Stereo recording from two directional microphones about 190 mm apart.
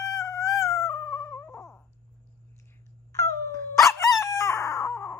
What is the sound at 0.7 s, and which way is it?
Cat, 15° left (ahead or behind).